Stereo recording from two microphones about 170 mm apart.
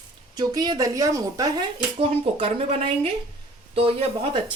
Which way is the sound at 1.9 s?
35° right (ahead or behind).